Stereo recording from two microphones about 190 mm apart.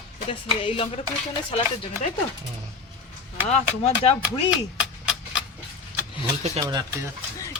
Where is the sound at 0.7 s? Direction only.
30° left (ahead or behind).